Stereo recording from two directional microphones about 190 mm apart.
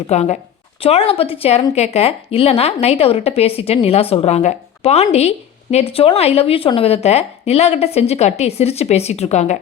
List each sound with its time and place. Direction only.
0.1 s a woman's voice: 35° left (ahead or behind)